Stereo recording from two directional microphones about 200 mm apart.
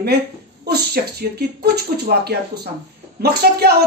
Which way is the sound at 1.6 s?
50° right (ahead or behind).